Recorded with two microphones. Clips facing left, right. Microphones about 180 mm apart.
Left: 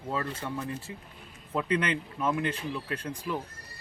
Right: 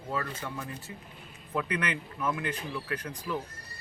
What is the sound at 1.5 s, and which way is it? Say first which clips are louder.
Speech: left 3 dB; 30° left (ahead or behind).